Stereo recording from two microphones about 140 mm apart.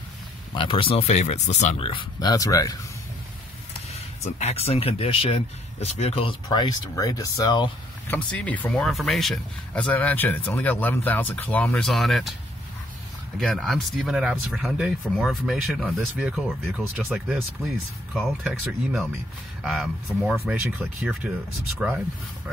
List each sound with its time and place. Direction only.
0.6 s speech: 40° left (ahead or behind); by 1.8 s 55° left (ahead or behind)
1.8 s speech: 35° left (ahead or behind)
3.9 s speech: 50° left (ahead or behind); by 7.7 s 30° left (ahead or behind)
8.1 s speech: 10° left (ahead or behind)
13.4 s speech: 5° left (ahead or behind); by 22.0 s 15° right (ahead or behind)